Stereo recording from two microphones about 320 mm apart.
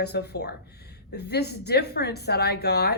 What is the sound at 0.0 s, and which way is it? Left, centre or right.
A woman's voice, left.